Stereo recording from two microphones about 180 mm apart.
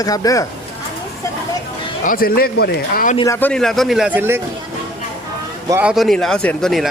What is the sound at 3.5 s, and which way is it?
Speech, centre (ahead or behind).